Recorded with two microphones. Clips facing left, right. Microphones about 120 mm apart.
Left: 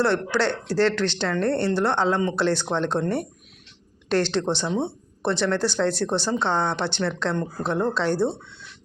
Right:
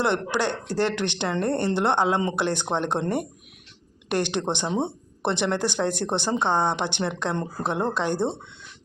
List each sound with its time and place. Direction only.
0.0 s speech: 15° right (ahead or behind)